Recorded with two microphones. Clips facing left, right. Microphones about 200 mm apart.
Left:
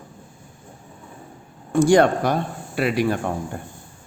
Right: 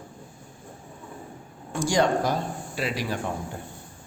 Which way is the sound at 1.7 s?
60° left (ahead or behind).